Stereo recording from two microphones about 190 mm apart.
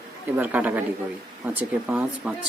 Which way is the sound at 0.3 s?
10° right (ahead or behind).